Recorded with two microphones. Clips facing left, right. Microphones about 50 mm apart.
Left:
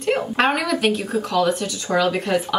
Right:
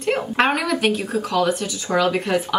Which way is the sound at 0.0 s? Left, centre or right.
Centre.